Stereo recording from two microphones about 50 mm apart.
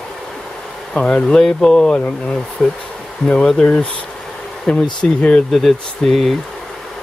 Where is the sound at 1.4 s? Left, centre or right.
Centre.